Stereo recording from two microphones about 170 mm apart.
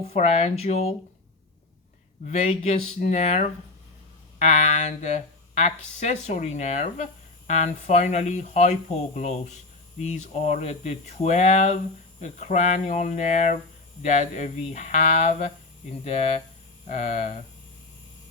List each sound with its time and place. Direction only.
0.0 s speech: 40° left (ahead or behind)
2.2 s speech: 40° left (ahead or behind)
16.8 s speech: 40° left (ahead or behind)